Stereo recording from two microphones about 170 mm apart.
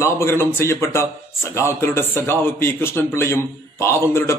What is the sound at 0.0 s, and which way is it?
A man's voice, 20° left (ahead or behind).